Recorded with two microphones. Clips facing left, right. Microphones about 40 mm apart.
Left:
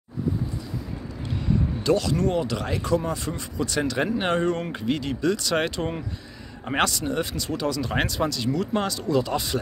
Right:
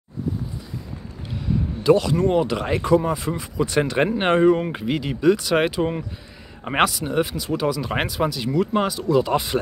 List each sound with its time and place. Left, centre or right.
1.8 s speech: centre
3.6 s speech: right
4.4 s speech: centre
6.6 s speech: centre
9.2 s speech: right